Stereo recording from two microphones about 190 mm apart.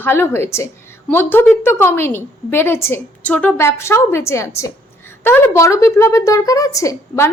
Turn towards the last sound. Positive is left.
turn(degrees=15)  # may be behind; listen again after turning